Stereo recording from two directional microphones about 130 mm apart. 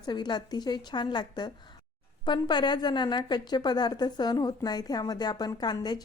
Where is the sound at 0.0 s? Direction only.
35° left (ahead or behind).